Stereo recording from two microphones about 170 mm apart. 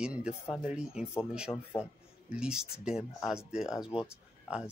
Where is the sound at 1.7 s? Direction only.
30° left (ahead or behind).